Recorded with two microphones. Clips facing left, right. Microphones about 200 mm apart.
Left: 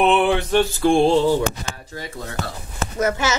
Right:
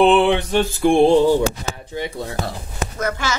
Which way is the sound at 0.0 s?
30° right (ahead or behind).